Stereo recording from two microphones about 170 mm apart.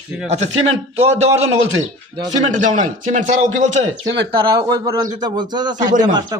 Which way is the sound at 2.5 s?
50° right (ahead or behind).